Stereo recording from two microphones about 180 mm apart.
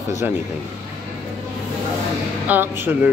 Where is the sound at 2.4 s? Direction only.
10° right (ahead or behind).